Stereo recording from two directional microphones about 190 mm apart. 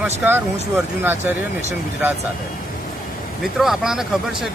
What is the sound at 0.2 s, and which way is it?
Speech, 10° right (ahead or behind).